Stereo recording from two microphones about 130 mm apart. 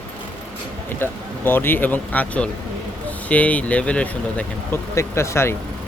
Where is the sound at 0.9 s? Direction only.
15° left (ahead or behind).